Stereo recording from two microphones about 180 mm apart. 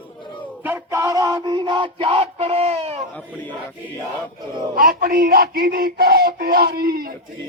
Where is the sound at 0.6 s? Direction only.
15° right (ahead or behind); by 3.0 s 35° right (ahead or behind).